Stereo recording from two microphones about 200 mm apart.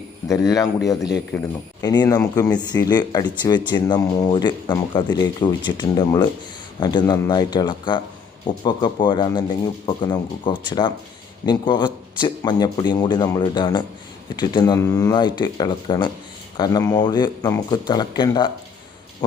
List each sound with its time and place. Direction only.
0.3 s a man's voice: 15° left (ahead or behind)